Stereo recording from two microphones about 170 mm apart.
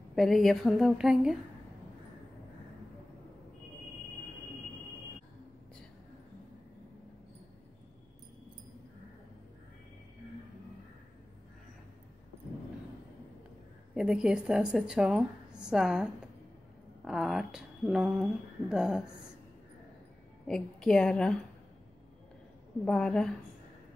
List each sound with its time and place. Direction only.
0.1 s a woman's voice: centre (ahead or behind)
13.9 s a woman's voice: 5° right (ahead or behind)
20.4 s a woman's voice: 5° left (ahead or behind)
22.8 s a woman's voice: 5° left (ahead or behind)